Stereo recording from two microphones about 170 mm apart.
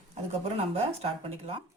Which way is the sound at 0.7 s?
35° right (ahead or behind).